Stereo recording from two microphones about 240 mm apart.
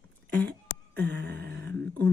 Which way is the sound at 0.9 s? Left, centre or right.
Right.